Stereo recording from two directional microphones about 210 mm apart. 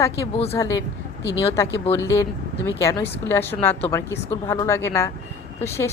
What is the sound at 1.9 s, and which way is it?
A woman's voice, 15° left (ahead or behind).